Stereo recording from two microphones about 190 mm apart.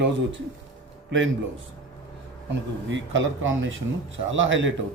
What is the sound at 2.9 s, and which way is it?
Speech, 85° right.